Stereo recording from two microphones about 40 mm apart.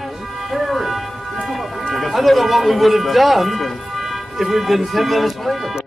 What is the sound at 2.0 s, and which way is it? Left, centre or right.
Speech, centre.